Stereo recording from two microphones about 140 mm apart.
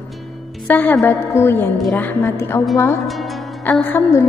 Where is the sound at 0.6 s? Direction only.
10° left (ahead or behind).